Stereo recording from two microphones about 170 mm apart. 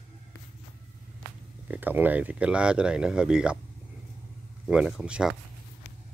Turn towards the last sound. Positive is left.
turn(degrees=-5)  # may be behind; listen again after turning